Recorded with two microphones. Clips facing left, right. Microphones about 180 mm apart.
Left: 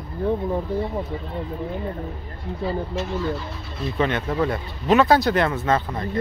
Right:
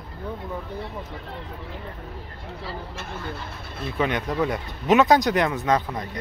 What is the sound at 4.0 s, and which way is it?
Speech, 15° right (ahead or behind).